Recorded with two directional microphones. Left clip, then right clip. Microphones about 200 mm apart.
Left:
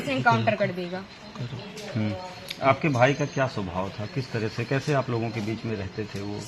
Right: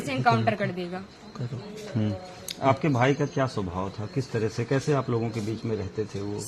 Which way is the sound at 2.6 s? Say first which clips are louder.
Left 2 dB; 55° right (ahead or behind).